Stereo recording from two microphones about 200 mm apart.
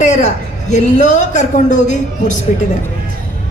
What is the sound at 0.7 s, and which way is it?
A man's voice, 40° left (ahead or behind).